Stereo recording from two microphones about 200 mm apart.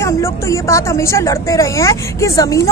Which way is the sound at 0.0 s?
15° left (ahead or behind).